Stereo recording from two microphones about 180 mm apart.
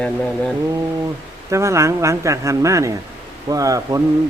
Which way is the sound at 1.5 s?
15° right (ahead or behind).